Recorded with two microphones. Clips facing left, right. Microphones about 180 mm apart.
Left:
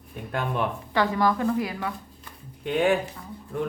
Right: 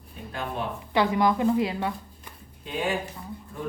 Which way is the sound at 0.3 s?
60° left (ahead or behind).